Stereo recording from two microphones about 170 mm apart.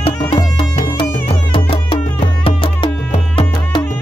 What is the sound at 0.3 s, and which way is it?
Music, 30° left (ahead or behind).